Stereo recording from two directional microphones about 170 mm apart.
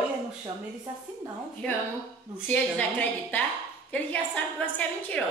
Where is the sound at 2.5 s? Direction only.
10° left (ahead or behind).